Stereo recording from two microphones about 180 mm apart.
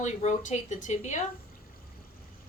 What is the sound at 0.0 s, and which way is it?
A woman's voice, 40° left (ahead or behind).